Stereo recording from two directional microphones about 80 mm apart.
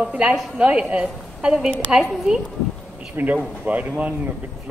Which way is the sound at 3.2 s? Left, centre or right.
Right.